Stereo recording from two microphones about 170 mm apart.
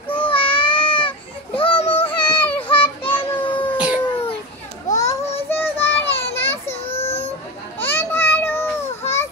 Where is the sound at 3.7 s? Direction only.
10° right (ahead or behind).